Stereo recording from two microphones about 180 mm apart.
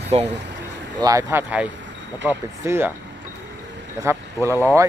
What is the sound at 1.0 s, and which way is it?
Speech, 20° right (ahead or behind).